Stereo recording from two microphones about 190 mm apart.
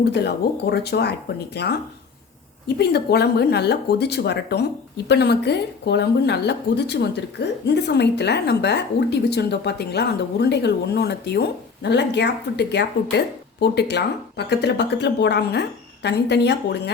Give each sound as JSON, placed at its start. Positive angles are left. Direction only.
{"t": 0.0, "sound": "speech", "side_deg": 60}